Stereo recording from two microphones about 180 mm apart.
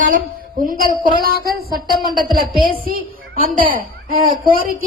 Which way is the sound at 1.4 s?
55° right (ahead or behind).